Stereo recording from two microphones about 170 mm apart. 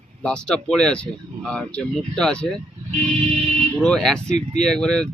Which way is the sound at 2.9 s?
40° right (ahead or behind).